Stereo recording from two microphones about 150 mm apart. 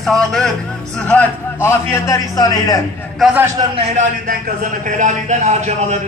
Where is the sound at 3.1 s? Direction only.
5° right (ahead or behind).